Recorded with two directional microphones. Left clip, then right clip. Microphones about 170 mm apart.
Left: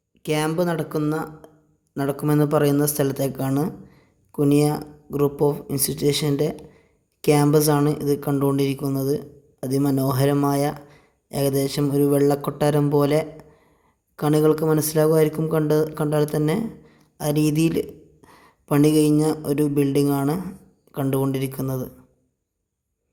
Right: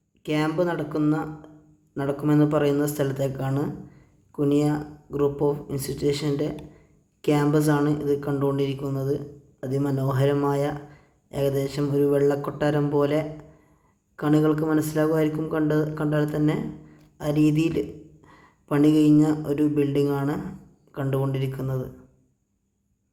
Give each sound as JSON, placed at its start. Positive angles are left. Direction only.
{"t": 0.2, "sound": "speech", "side_deg": 40}